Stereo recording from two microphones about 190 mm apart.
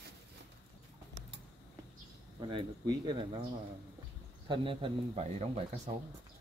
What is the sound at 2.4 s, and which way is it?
Speech, 25° right (ahead or behind).